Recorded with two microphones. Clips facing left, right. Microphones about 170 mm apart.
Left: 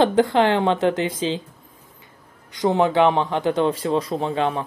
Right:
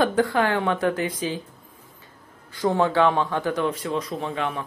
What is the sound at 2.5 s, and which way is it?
Speech, 20° left (ahead or behind).